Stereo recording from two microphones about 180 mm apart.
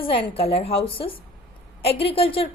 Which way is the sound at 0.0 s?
30° left (ahead or behind).